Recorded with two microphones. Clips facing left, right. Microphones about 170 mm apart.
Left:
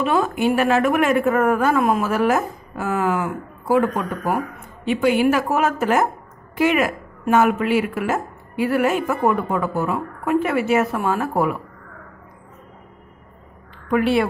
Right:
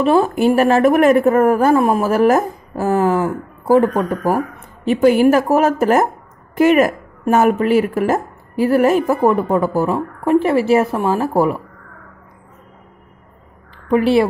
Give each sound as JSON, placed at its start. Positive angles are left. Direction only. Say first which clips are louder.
{"t": 0.0, "sound": "a woman's voice", "louder": "right 6 dB", "side_deg": -35}
{"t": 13.8, "sound": "a woman's voice", "louder": "right 5 dB", "side_deg": -30}